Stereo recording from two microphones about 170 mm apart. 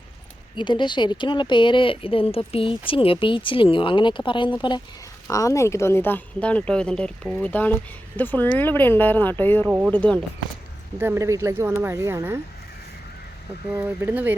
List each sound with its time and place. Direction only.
0.5 s speech: 25° left (ahead or behind); by 9.6 s 10° left (ahead or behind)
9.6 s speech: 10° right (ahead or behind)
9.9 s speech: 5° left (ahead or behind)
10.9 s speech: 15° right (ahead or behind)
13.7 s speech: 10° right (ahead or behind)